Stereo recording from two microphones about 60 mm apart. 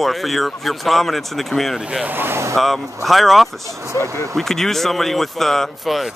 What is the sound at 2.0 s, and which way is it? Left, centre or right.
Speech, right.